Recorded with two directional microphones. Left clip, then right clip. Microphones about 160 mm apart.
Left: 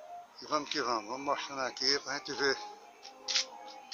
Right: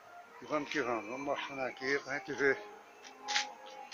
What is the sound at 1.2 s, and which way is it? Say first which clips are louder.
Speech: left 3 dB; 20° left (ahead or behind).